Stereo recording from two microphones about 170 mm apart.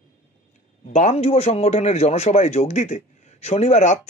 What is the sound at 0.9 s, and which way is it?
A man's voice, 40° left (ahead or behind).